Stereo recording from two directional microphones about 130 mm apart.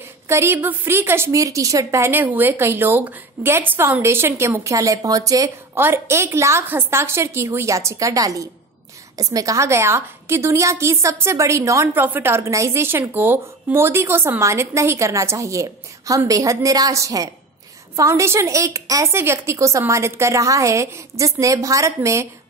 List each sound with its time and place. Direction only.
0.3 s a woman's voice: 20° right (ahead or behind)